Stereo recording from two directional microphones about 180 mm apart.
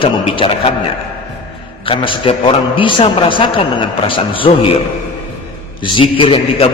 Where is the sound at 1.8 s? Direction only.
30° left (ahead or behind).